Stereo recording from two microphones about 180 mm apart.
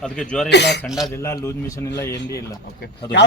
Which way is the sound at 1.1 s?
15° left (ahead or behind).